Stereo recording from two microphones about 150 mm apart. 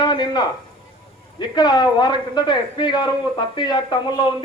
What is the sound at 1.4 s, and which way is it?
A man's voice, 30° left (ahead or behind).